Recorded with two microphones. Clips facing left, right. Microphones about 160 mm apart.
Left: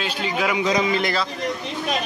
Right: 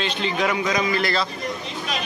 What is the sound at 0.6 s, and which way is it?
Speech, 25° left (ahead or behind).